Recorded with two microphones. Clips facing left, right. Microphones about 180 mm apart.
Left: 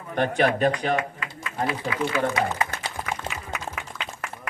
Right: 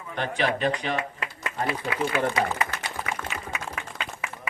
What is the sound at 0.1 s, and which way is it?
Speech, 50° left (ahead or behind).